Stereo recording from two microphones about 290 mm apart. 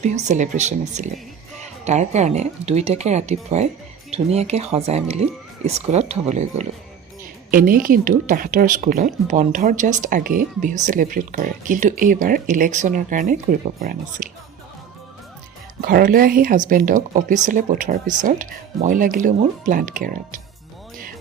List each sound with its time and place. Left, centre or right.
0.0 s speech: right
15.8 s speech: right